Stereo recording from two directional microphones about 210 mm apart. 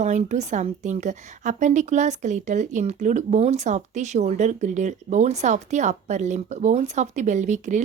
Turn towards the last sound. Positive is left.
turn(degrees=-35)  # may be behind; listen again after turning